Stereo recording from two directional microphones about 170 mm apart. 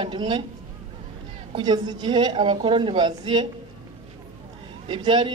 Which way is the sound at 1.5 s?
25° right (ahead or behind).